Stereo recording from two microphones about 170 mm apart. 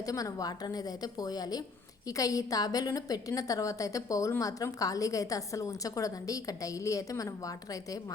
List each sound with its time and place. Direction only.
0.0 s a woman's voice: 20° left (ahead or behind)